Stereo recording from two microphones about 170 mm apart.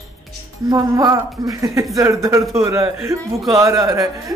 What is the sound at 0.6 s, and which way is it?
A man's voice, 20° right (ahead or behind).